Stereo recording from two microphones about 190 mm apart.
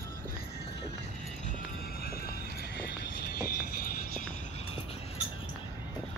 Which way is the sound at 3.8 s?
45° left (ahead or behind).